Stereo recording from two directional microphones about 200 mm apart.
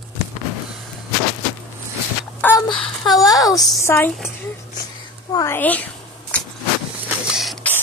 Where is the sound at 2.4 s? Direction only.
10° left (ahead or behind).